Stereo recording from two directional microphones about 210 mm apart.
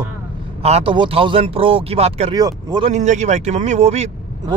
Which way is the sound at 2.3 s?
20° right (ahead or behind).